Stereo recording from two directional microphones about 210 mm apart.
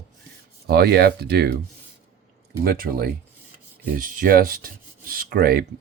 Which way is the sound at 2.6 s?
45° right (ahead or behind).